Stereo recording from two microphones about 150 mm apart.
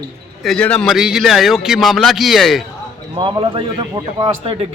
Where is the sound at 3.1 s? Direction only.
35° right (ahead or behind).